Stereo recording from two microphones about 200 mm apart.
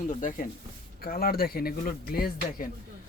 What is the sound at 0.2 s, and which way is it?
Speech, 40° left (ahead or behind).